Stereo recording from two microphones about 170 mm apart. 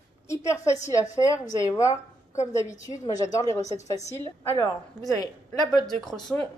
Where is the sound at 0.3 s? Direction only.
15° left (ahead or behind).